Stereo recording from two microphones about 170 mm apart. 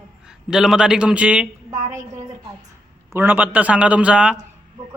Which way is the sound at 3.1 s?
10° right (ahead or behind).